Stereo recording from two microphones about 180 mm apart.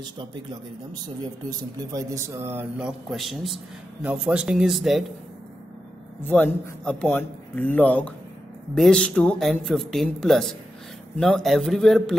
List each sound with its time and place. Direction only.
0.0 s speech: 25° right (ahead or behind)
1.6 s speech: 20° right (ahead or behind)
3.1 s speech: centre (ahead or behind)
6.2 s speech: 10° left (ahead or behind)